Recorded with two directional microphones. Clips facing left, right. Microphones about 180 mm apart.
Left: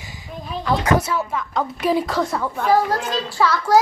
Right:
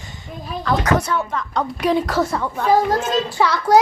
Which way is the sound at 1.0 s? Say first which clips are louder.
Right 1 dB; 5° left (ahead or behind).